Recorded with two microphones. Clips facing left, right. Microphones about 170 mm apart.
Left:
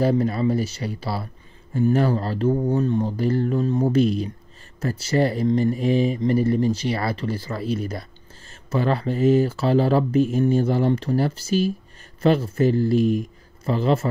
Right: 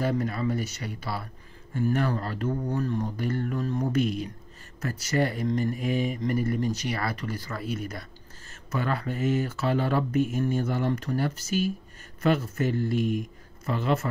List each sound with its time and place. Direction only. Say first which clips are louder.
0.0 s speech: left 7 dB; 30° left (ahead or behind)